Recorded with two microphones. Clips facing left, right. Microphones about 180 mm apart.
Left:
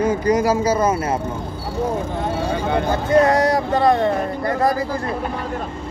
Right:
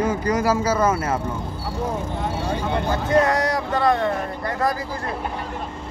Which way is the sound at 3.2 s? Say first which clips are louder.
Left 5 dB; 30° left (ahead or behind).